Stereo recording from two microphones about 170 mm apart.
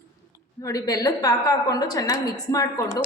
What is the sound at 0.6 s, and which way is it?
A woman's voice, 20° left (ahead or behind).